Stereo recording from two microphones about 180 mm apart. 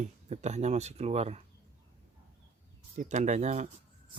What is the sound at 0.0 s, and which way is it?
Speech, 40° right (ahead or behind).